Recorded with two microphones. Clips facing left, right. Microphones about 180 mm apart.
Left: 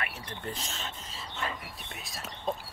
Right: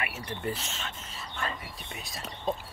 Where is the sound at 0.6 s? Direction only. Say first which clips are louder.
Even; 35° left (ahead or behind).